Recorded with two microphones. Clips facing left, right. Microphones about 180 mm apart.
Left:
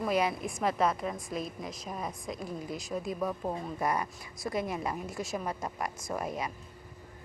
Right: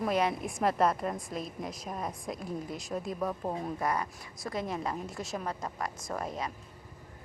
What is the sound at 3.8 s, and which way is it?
A woman's voice, 10° left (ahead or behind).